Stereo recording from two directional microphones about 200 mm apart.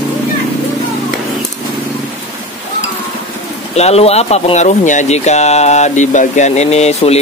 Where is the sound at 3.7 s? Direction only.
30° left (ahead or behind).